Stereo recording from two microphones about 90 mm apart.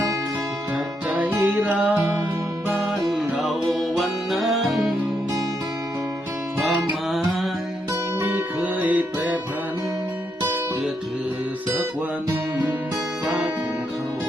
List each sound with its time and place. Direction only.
1.2 s music: 15° right (ahead or behind)
2.6 s music: centre (ahead or behind)
8.6 s music: 20° right (ahead or behind)
13.2 s music: 5° right (ahead or behind)